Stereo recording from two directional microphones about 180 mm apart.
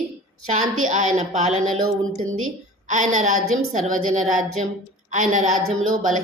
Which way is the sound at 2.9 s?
45° right (ahead or behind).